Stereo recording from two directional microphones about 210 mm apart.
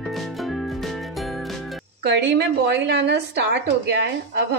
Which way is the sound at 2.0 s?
55° right (ahead or behind).